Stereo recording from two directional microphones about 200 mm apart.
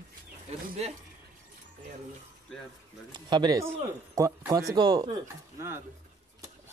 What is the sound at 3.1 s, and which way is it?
Speech, 20° right (ahead or behind).